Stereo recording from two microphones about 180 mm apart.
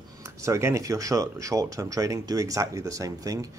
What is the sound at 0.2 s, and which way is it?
Speech, 15° right (ahead or behind).